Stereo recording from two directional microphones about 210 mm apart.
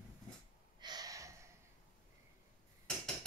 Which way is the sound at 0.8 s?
20° right (ahead or behind).